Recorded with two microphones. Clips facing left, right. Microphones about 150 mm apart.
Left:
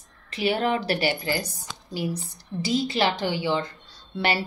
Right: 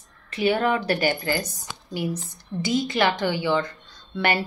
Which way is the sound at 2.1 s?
30° left (ahead or behind).